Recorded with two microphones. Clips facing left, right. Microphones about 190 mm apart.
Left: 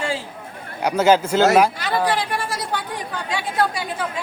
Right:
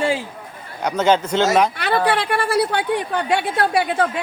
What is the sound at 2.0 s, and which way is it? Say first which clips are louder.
Speech: right 3 dB; 65° right (ahead or behind).